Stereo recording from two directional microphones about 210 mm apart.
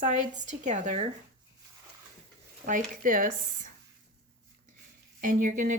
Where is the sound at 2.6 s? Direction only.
40° right (ahead or behind).